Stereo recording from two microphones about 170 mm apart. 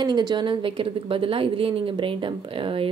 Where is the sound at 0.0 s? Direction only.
25° right (ahead or behind).